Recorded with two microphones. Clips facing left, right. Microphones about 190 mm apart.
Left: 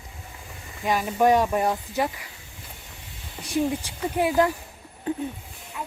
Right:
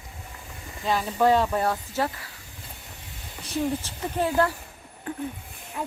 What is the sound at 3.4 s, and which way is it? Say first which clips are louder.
Speech: left 2 dB; 15° left (ahead or behind).